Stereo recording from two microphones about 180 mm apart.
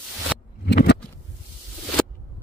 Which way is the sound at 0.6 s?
60° left (ahead or behind).